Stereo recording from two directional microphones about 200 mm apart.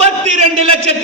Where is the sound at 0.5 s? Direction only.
30° right (ahead or behind).